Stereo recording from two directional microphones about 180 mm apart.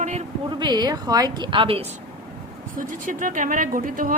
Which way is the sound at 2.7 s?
50° right (ahead or behind).